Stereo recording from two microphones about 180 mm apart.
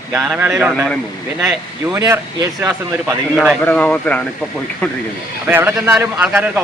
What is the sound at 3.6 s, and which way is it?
Speech, 5° left (ahead or behind).